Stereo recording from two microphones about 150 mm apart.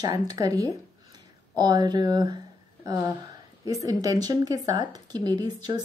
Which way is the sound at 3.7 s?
25° right (ahead or behind).